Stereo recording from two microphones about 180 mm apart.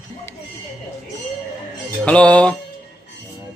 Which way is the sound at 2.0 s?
5° left (ahead or behind).